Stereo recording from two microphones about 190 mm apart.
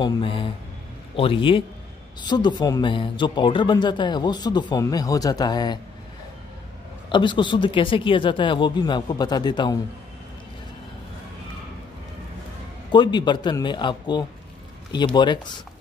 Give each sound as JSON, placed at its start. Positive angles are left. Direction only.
{"t": 0.0, "sound": "speech", "side_deg": 25}
{"t": 7.1, "sound": "speech", "side_deg": 25}
{"t": 12.9, "sound": "speech", "side_deg": 25}